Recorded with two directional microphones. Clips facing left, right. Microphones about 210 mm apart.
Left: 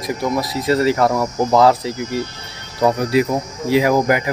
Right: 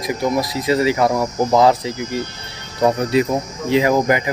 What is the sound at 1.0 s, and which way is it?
Speech, 15° right (ahead or behind).